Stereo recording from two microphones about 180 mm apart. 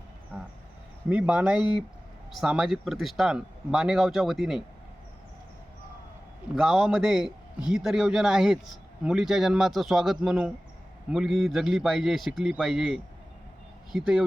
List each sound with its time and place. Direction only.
1.1 s a man's voice: 5° right (ahead or behind)
6.6 s a man's voice: centre (ahead or behind)